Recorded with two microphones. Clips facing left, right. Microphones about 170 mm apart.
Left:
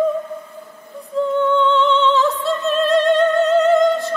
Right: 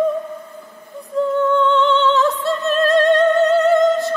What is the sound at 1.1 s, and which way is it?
Music, centre (ahead or behind).